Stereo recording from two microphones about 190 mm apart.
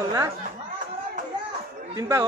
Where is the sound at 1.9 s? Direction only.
15° right (ahead or behind).